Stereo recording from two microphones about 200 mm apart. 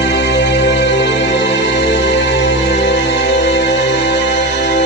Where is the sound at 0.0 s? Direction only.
60° left (ahead or behind).